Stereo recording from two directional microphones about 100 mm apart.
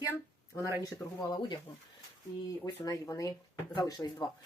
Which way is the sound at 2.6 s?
35° left (ahead or behind).